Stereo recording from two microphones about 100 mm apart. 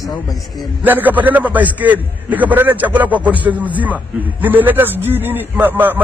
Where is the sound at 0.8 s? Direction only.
15° right (ahead or behind).